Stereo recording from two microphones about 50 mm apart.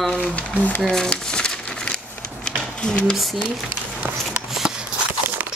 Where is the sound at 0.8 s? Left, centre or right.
Centre.